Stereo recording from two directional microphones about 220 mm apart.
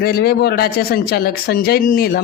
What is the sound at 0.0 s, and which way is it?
Speech, 45° left (ahead or behind).